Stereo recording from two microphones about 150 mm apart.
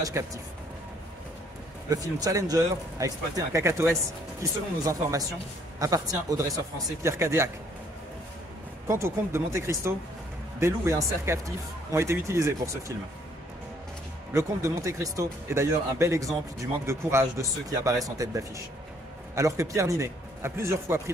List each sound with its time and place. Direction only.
0.0 s speech: 25° right (ahead or behind)
1.9 s speech: 25° right (ahead or behind)
8.8 s speech: 20° right (ahead or behind)
14.3 s speech: 20° right (ahead or behind)